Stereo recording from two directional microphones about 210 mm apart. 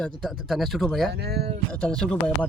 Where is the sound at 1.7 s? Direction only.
5° left (ahead or behind).